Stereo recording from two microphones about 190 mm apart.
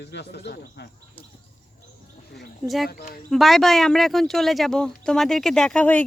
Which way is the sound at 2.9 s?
50° left (ahead or behind).